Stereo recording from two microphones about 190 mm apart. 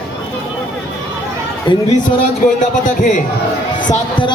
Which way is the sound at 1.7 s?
25° left (ahead or behind).